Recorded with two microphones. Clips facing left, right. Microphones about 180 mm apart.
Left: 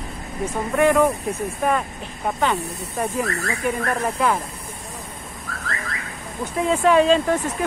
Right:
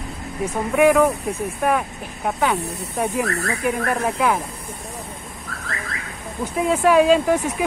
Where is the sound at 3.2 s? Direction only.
70° right (ahead or behind).